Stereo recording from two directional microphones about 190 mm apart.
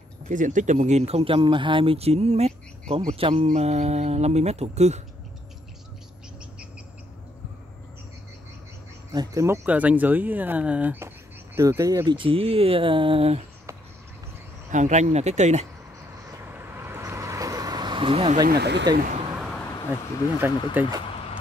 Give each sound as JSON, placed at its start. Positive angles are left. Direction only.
{"t": 0.3, "sound": "speech", "side_deg": -40}
{"t": 9.1, "sound": "speech", "side_deg": -20}
{"t": 14.7, "sound": "speech", "side_deg": -40}
{"t": 16.3, "sound": "vehicle", "side_deg": -10}
{"t": 18.5, "sound": "speech", "side_deg": -60}
{"t": 19.3, "sound": "vehicle", "side_deg": 0}
{"t": 20.8, "sound": "speech", "side_deg": -10}